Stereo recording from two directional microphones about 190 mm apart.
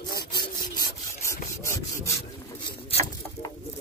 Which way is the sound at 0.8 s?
15° left (ahead or behind).